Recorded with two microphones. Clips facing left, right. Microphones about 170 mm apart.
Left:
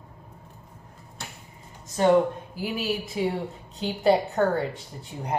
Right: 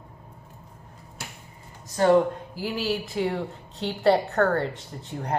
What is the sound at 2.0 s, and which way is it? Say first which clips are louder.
Speech: right 1 dB; 20° left (ahead or behind).